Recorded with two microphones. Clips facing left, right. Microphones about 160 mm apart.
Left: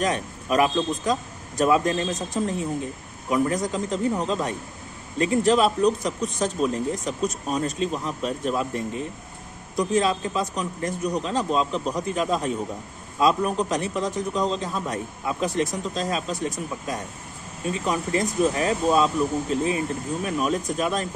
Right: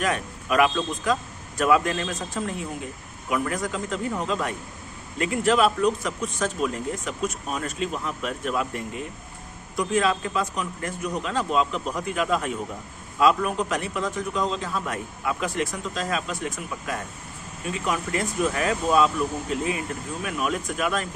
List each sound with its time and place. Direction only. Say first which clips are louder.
0.0 s a man's voice: left 1 dB; 35° left (ahead or behind)
3.3 s a man's voice: left 4 dB; 35° left (ahead or behind)